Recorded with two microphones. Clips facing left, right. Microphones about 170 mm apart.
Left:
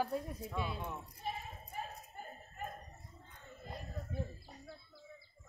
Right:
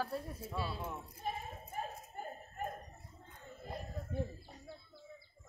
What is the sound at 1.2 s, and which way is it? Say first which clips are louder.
Basketball bounce: right 1 dB; 45° right (ahead or behind).